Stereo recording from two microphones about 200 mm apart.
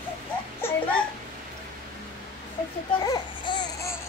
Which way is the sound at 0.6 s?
10° left (ahead or behind).